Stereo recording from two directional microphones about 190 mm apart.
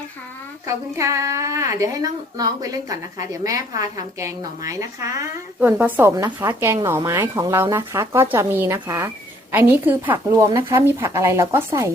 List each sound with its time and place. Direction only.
0.7 s a woman's voice: 15° right (ahead or behind)